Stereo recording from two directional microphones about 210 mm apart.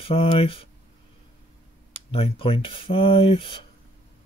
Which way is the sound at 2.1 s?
25° left (ahead or behind).